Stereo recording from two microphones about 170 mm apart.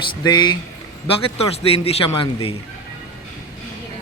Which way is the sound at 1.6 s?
35° left (ahead or behind).